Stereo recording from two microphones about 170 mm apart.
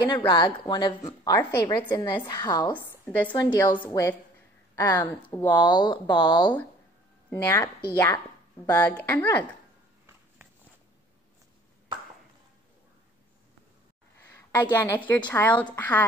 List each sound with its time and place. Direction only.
0.0 s a woman's voice: 25° left (ahead or behind)
5.6 s speech: 25° left (ahead or behind)
7.2 s a woman's voice: 15° left (ahead or behind)
14.2 s a woman's voice: 10° left (ahead or behind)